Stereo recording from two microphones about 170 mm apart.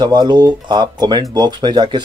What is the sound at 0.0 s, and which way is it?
Speech, 25° right (ahead or behind).